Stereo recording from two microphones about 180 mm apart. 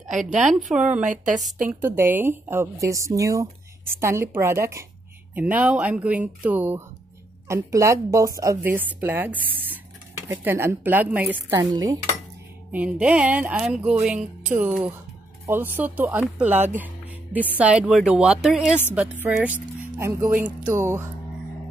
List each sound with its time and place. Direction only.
0.0 s a woman's voice: 45° right (ahead or behind)
0.3 s speech: centre (ahead or behind)
11.7 s dishes: 20° right (ahead or behind)
12.7 s speech: 5° right (ahead or behind)
16.7 s music: 10° right (ahead or behind)
17.6 s speech: 5° right (ahead or behind)